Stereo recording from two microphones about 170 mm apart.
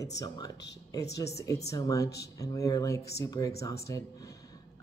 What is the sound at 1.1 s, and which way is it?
Speech, 20° left (ahead or behind).